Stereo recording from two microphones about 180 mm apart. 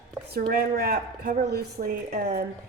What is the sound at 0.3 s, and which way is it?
A woman's voice, 55° right (ahead or behind).